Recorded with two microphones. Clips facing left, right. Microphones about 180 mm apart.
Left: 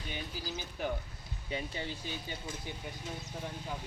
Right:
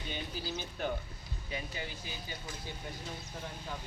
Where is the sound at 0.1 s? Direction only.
5° left (ahead or behind).